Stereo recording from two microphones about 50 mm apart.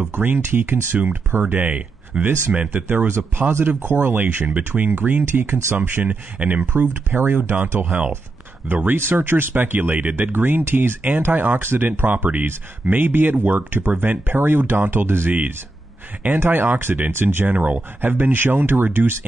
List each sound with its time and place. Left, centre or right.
0.0 s speech: right
1.8 s speech: right
3.1 s speech: right
5.8 s speech: right
7.2 s speech: right
10.3 s speech: right
16.3 s speech: right